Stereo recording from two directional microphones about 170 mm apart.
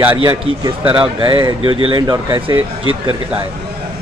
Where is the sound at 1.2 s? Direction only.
30° right (ahead or behind).